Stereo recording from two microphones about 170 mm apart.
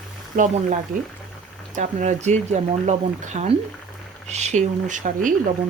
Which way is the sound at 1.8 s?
45° right (ahead or behind).